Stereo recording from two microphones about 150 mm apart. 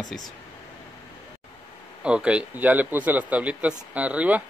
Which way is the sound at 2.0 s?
5° right (ahead or behind).